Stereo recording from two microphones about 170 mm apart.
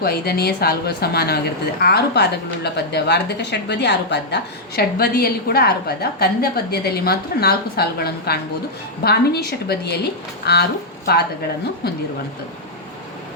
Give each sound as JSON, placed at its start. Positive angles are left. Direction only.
{"t": 0.0, "sound": "a woman's voice", "side_deg": 65}